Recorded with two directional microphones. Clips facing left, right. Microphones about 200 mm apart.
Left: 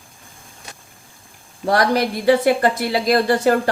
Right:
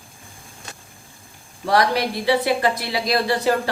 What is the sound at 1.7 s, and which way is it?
Speech, 45° left (ahead or behind).